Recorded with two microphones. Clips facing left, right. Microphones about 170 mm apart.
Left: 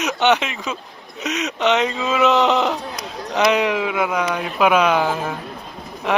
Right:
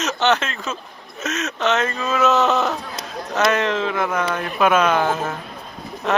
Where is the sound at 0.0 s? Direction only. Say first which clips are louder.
Left 2 dB; 15° left (ahead or behind).